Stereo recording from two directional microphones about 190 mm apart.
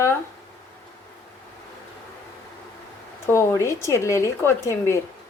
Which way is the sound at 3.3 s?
15° left (ahead or behind).